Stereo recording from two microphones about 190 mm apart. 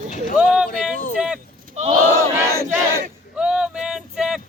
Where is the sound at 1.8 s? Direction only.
35° right (ahead or behind).